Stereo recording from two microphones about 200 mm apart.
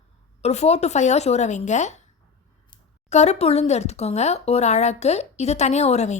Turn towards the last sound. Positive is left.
turn(degrees=35)  # may be behind; listen again after turning